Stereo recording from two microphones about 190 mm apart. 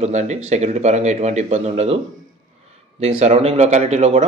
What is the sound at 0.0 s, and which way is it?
A man's voice, 35° right (ahead or behind).